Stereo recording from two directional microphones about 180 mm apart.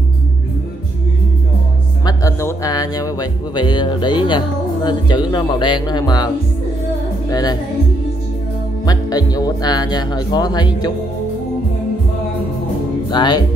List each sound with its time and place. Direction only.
2.0 s speech: 20° left (ahead or behind)
7.2 s music: 20° left (ahead or behind)
8.8 s speech: 20° left (ahead or behind)
13.1 s speech: 25° left (ahead or behind)